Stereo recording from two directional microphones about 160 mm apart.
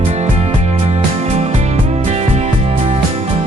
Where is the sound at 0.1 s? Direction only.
45° right (ahead or behind).